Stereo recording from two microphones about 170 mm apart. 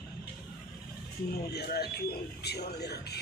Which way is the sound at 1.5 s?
70° left (ahead or behind).